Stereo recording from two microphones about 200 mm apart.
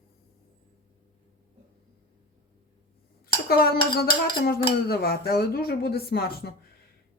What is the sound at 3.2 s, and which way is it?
Dishes, 50° left (ahead or behind).